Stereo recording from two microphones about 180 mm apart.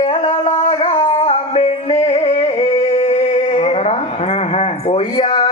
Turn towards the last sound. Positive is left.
turn(degrees=30)  # may be behind; listen again after turning